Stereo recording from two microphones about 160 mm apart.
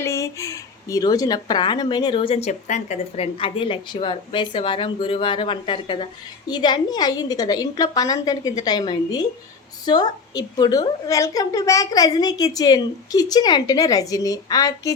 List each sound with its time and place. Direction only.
0.0 s speech: 20° left (ahead or behind); by 3.2 s 45° left (ahead or behind)
3.3 s a woman's voice: 35° left (ahead or behind)